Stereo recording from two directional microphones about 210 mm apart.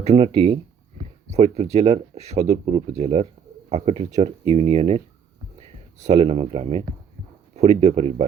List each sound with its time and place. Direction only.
0.0 s speech: 30° right (ahead or behind)
6.1 s speech: 25° right (ahead or behind)